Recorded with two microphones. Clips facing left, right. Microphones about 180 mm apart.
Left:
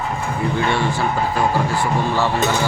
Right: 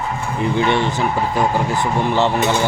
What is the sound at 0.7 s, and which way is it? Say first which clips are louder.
Speech: right 2 dB; 20° right (ahead or behind).